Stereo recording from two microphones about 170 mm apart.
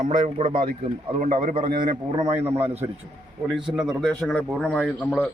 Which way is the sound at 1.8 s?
25° right (ahead or behind).